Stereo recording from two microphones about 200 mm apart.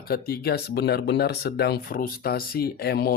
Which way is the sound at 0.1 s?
50° left (ahead or behind).